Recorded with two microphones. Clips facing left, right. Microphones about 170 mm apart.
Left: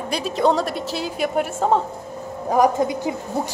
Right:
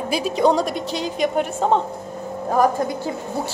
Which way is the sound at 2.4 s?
15° left (ahead or behind).